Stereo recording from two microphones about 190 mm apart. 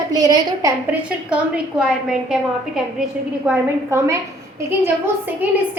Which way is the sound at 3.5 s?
15° right (ahead or behind).